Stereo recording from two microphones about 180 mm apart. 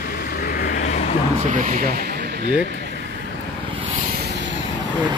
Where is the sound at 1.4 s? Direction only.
45° right (ahead or behind); by 2.5 s 65° right (ahead or behind).